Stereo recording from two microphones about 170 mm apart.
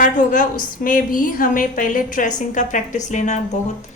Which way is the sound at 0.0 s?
50° left (ahead or behind).